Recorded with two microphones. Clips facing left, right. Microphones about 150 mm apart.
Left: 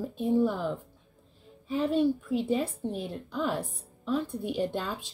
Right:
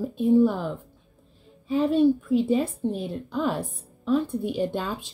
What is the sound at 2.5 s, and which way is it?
A woman's voice, 15° right (ahead or behind).